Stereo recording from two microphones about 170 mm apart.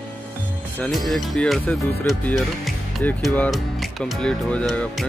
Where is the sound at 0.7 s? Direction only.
5° left (ahead or behind).